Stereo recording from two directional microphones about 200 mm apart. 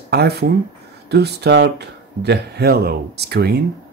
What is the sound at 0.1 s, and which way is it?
Speech, 55° right (ahead or behind).